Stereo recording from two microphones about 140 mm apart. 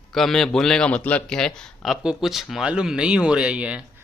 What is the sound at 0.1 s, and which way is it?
A man's voice, centre (ahead or behind).